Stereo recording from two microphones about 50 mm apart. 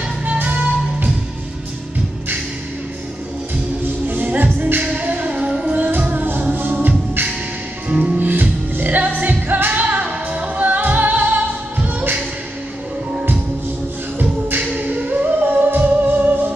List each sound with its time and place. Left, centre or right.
0.2 s music: right
3.8 s music: right
7.9 s music: right
8.3 s music: right
14.5 s music: right
15.4 s music: right